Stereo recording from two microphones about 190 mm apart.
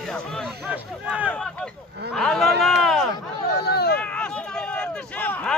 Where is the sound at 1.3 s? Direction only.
5° left (ahead or behind).